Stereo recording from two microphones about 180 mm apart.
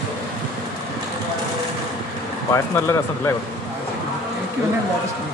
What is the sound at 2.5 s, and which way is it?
Speech, 15° left (ahead or behind).